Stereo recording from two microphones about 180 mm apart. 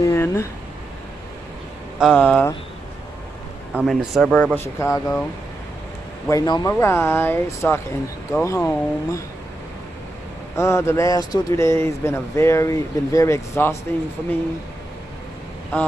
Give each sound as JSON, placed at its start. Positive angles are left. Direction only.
{"t": 0.0, "sound": "a sound", "side_deg": 15}
{"t": 2.0, "sound": "speech", "side_deg": 5}
{"t": 3.7, "sound": "speech", "side_deg": 0}
{"t": 4.6, "sound": "speech", "side_deg": 15}
{"t": 6.2, "sound": "a man's voice", "side_deg": 20}
{"t": 10.5, "sound": "speech", "side_deg": 15}